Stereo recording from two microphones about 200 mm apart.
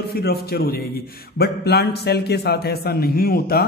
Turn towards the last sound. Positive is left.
turn(degrees=50)  # may be behind; listen again after turning